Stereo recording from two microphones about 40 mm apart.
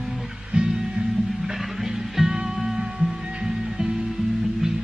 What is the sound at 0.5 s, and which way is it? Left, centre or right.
Music, centre.